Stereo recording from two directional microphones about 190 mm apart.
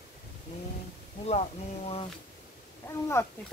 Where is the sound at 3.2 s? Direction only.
15° left (ahead or behind).